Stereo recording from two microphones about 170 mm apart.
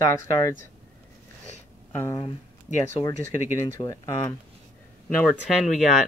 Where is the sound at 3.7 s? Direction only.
20° left (ahead or behind).